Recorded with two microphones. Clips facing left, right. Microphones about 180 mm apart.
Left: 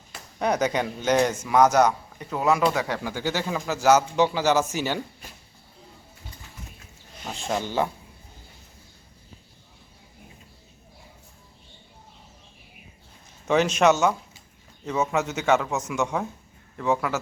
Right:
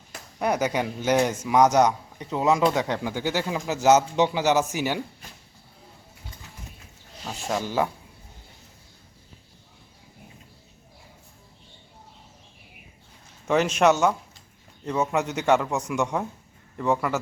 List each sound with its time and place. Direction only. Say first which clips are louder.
0.3 s speech: left 1 dB; 5° right (ahead or behind)
7.3 s speech: even; 5° right (ahead or behind)
13.5 s speech: even; 10° right (ahead or behind)
14.0 s a sound: even; 5° left (ahead or behind)
14.8 s a man's voice: even; 5° left (ahead or behind)
15.1 s speech: even; 15° right (ahead or behind)
15.4 s a man's voice: right 1 dB; 5° left (ahead or behind)
15.8 s speech: right 1 dB; 15° right (ahead or behind)
16.7 s a man's voice: even; centre (ahead or behind)